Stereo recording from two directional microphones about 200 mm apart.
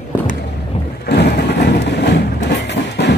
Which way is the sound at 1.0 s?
55° left (ahead or behind).